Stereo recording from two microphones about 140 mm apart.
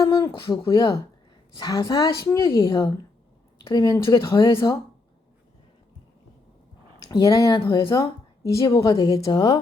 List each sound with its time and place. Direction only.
0.0 s speech: 30° left (ahead or behind)
7.0 s speech: 25° left (ahead or behind)